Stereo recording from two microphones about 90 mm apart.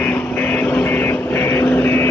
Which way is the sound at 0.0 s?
15° left (ahead or behind).